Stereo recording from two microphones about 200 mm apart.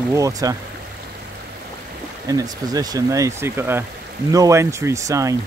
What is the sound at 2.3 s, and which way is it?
Speech, 20° right (ahead or behind).